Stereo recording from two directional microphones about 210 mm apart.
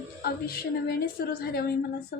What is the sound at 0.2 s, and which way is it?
A woman's voice, 45° left (ahead or behind).